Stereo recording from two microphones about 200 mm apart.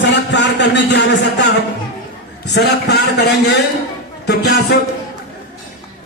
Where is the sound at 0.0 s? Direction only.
60° left (ahead or behind).